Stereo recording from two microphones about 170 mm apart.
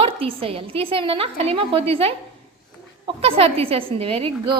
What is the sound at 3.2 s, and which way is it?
A woman's voice, 35° right (ahead or behind).